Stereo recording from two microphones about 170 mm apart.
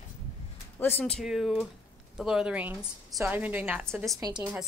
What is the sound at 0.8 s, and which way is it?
A woman's voice, 10° left (ahead or behind).